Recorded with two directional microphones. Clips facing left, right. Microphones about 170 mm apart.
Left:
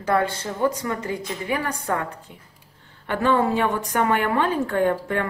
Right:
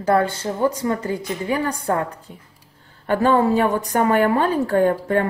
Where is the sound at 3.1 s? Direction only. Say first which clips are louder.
Right 4 dB; 40° right (ahead or behind).